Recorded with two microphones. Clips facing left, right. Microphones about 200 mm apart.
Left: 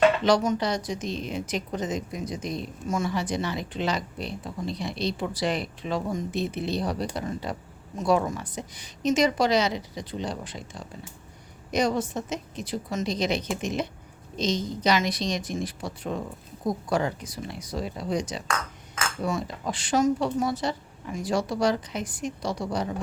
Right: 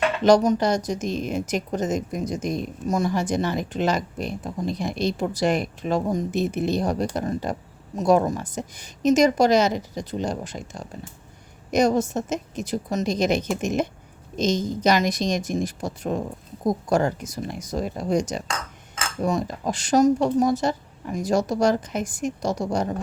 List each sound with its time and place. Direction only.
0.3 s speech: 40° right (ahead or behind)